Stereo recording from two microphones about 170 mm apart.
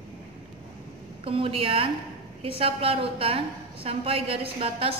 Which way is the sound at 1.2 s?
35° right (ahead or behind).